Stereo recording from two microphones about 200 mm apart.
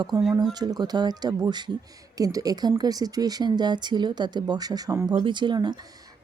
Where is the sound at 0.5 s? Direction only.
20° right (ahead or behind).